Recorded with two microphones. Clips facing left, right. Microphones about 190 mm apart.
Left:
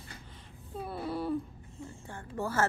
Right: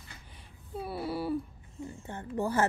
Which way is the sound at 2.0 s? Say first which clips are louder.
Right 4 dB; 20° right (ahead or behind).